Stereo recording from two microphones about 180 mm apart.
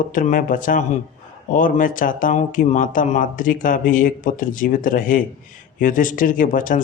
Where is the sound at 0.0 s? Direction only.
50° left (ahead or behind).